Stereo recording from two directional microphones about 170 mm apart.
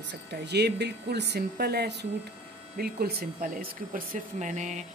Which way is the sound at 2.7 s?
65° right (ahead or behind).